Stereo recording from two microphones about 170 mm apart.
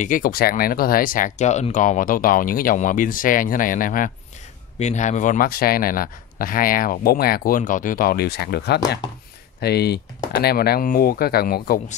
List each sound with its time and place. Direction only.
0.0 s speech: 55° left (ahead or behind)
4.7 s speech: 45° left (ahead or behind); by 11.8 s 60° left (ahead or behind)